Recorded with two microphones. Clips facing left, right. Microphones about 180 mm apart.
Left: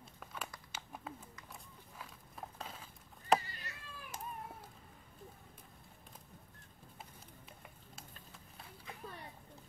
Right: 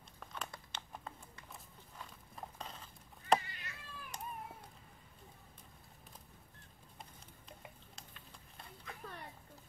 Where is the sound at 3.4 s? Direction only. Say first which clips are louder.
Left 1 dB; 40° left (ahead or behind).